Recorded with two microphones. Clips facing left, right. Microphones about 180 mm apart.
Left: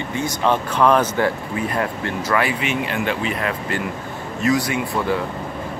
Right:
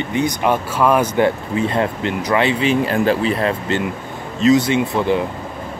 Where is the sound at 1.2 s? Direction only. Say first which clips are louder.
Right 4 dB; 25° right (ahead or behind).